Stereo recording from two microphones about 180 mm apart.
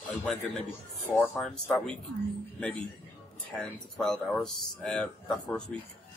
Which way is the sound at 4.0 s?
5° left (ahead or behind).